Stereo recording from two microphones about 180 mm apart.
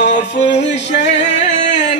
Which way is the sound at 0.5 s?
75° left (ahead or behind).